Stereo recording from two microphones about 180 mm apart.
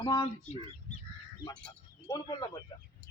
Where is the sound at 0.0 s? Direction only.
25° left (ahead or behind).